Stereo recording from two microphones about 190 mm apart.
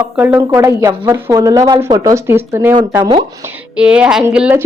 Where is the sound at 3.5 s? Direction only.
5° right (ahead or behind).